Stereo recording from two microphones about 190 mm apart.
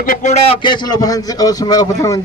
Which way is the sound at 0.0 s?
45° left (ahead or behind).